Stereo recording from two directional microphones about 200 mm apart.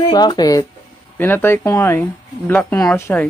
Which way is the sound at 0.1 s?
20° left (ahead or behind).